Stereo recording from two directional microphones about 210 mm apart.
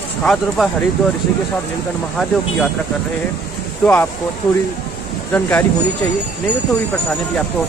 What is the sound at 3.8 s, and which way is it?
Speech, 10° left (ahead or behind).